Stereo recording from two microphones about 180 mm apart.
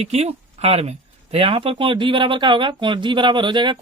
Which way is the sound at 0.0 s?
35° right (ahead or behind).